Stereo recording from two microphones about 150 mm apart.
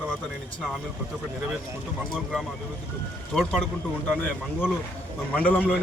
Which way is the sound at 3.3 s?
5° left (ahead or behind).